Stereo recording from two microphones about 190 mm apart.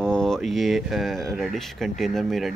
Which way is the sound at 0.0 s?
5° left (ahead or behind).